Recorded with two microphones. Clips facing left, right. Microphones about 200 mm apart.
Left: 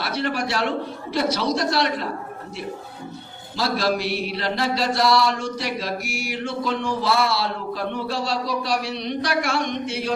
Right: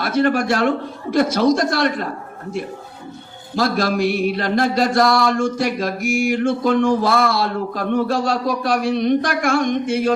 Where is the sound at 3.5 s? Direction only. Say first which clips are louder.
Right 4 dB; 50° right (ahead or behind).